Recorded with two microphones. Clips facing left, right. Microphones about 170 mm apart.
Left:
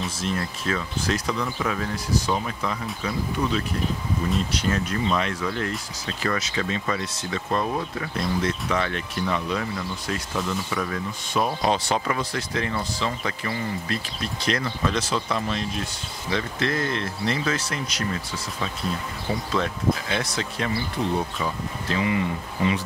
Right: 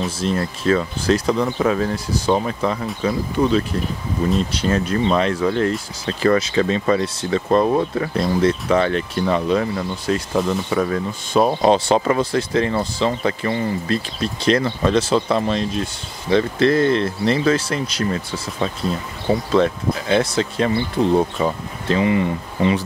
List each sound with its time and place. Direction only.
0.2 s speech: 30° right (ahead or behind)
21.2 s speech: 45° right (ahead or behind)